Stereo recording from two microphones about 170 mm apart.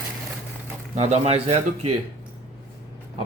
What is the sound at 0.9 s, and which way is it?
Speech, 40° right (ahead or behind).